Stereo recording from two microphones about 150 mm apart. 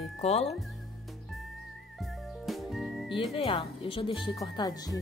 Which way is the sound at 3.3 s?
35° left (ahead or behind).